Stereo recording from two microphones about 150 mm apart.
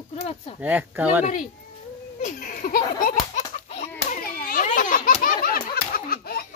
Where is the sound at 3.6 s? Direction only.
45° left (ahead or behind).